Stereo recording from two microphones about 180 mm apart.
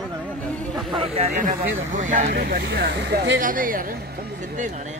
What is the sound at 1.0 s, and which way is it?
Speech, 40° right (ahead or behind).